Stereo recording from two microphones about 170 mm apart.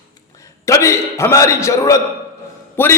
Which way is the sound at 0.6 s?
20° left (ahead or behind).